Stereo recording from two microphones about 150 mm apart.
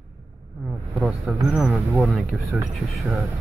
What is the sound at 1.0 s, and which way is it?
Speech, 5° right (ahead or behind).